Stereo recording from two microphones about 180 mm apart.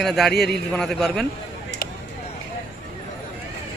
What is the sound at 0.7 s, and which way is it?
Speech, 5° left (ahead or behind).